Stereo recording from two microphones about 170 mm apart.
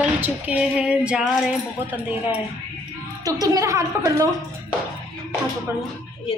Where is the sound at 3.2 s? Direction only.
20° right (ahead or behind).